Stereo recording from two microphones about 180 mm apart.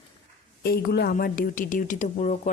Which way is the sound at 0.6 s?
60° left (ahead or behind).